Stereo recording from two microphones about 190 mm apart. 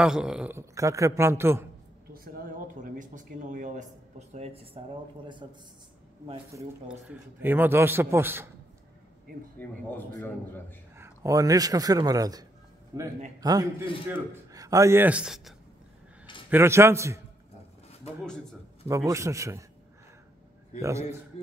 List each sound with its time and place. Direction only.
0.0 s a man's voice: 5° right (ahead or behind)
2.1 s a sound: 45° right (ahead or behind)
4.3 s a man's voice: 35° right (ahead or behind); by 8.5 s 10° right (ahead or behind)
9.6 s a man's voice: 10° left (ahead or behind)
11.0 s a man's voice: 15° right (ahead or behind)
18.9 s a man's voice: 15° right (ahead or behind)